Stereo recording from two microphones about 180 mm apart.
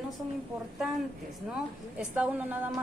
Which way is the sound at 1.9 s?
5° right (ahead or behind).